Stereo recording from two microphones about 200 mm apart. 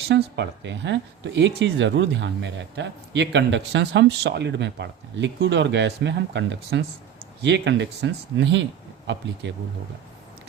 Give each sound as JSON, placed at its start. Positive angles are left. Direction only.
{"t": 0.3, "sound": "speech", "side_deg": -60}